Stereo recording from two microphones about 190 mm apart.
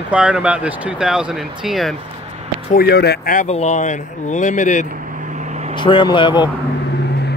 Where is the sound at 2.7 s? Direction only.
55° left (ahead or behind); by 4.8 s 40° left (ahead or behind).